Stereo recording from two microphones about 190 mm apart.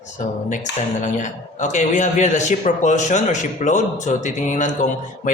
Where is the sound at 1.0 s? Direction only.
40° left (ahead or behind).